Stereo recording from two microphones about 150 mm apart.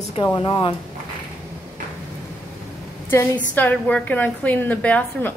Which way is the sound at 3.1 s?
15° left (ahead or behind).